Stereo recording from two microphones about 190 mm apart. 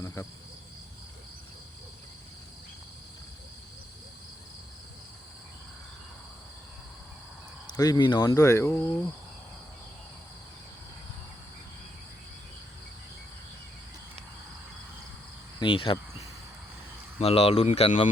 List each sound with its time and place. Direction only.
0.0 s cricket: 15° left (ahead or behind)
7.7 s speech: 20° left (ahead or behind)
15.5 s speech: 25° left (ahead or behind)
17.2 s speech: 30° left (ahead or behind)